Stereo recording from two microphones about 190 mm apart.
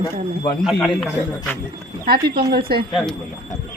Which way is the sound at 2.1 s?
55° right (ahead or behind).